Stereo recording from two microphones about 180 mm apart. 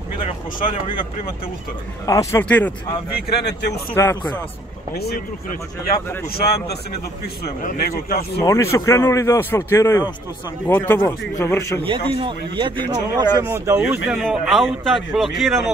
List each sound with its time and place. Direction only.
2.0 s a man's voice: 15° left (ahead or behind)
3.2 s speech: 65° left (ahead or behind)
3.9 s a man's voice: 10° left (ahead or behind)
4.9 s speech: 60° left (ahead or behind)
8.7 s a man's voice: 15° left (ahead or behind)
11.8 s a man's voice: 30° right (ahead or behind)
13.4 s a man's voice: 10° right (ahead or behind)